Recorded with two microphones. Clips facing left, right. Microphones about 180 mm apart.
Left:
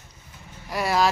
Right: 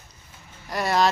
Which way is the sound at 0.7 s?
5° left (ahead or behind).